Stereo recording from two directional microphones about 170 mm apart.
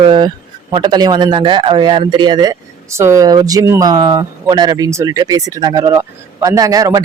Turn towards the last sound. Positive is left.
turn(degrees=-20)  # may be behind; listen again after turning